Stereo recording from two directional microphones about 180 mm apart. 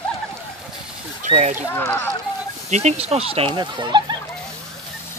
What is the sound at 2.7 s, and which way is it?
Speech, 40° right (ahead or behind).